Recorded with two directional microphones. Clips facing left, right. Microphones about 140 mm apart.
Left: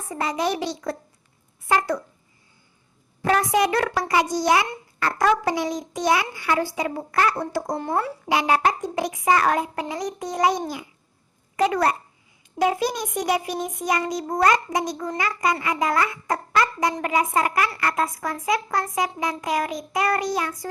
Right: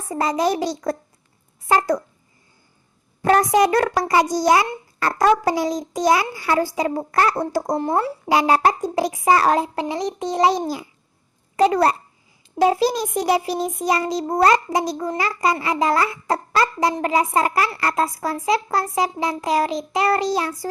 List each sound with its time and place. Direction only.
0.1 s child singing: 35° right (ahead or behind)
3.2 s child singing: 40° right (ahead or behind)
9.8 s a child's voice: 25° right (ahead or behind)
11.5 s child singing: 35° right (ahead or behind)